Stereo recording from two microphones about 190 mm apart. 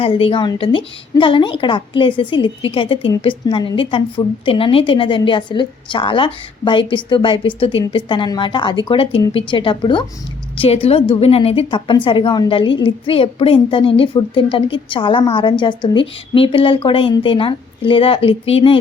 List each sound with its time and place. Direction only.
0.0 s a woman's voice: 30° left (ahead or behind)